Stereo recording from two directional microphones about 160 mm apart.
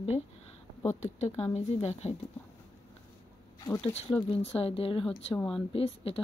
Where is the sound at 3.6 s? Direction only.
25° left (ahead or behind).